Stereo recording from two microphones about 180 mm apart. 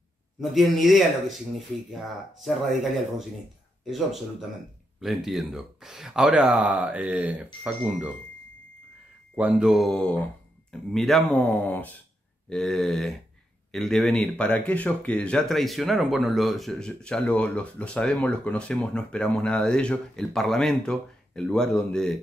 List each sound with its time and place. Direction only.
0.4 s speech: centre (ahead or behind)
9.3 s speech: 5° right (ahead or behind)